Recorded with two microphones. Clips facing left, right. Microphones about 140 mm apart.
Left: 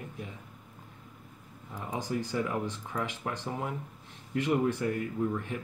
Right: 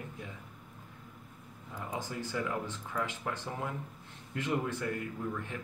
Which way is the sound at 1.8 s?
15° left (ahead or behind).